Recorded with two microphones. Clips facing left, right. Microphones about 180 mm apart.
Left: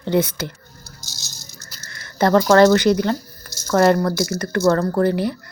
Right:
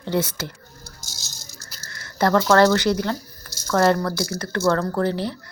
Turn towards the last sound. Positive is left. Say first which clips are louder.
# left 4 dB
turn(degrees=10)  # may be behind; listen again after turning